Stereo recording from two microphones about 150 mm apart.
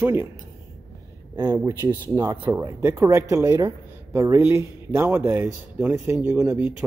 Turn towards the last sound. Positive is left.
turn(degrees=-15)  # may be behind; listen again after turning